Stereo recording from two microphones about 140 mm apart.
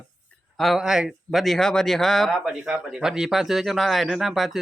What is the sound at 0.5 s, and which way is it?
A man's voice, centre (ahead or behind).